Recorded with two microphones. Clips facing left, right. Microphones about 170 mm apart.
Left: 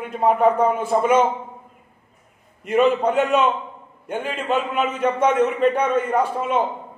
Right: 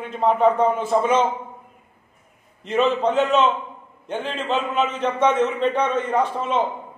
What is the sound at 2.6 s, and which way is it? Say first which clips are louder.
A man's voice: left 2 dB; 10° left (ahead or behind).